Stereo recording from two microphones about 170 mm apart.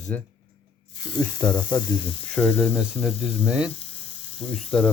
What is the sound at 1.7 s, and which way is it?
Speech, 25° left (ahead or behind).